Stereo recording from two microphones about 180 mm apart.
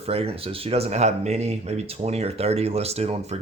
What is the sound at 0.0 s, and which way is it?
Speech, 35° right (ahead or behind).